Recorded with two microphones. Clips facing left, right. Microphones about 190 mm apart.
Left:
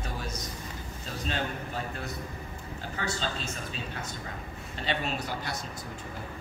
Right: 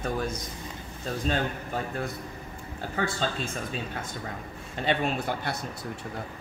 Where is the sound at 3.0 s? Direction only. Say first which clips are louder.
Right 5 dB; 50° right (ahead or behind).